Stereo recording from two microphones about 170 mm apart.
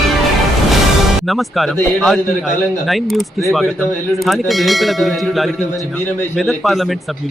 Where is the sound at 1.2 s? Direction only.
Centre (ahead or behind).